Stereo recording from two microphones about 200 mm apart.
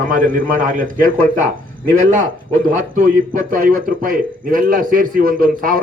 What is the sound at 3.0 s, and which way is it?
A man's voice, 40° right (ahead or behind).